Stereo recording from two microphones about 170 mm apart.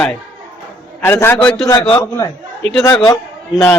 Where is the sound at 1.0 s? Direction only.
15° left (ahead or behind).